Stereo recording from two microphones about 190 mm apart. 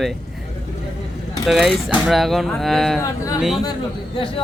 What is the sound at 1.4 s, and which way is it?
Speech, centre (ahead or behind).